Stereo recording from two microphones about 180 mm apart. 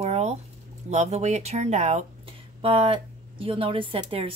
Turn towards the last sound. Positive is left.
turn(degrees=-30)  # may be behind; listen again after turning